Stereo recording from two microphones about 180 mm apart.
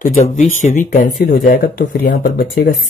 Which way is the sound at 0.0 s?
40° left (ahead or behind).